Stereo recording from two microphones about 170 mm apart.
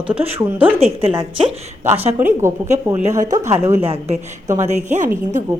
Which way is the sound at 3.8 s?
35° right (ahead or behind).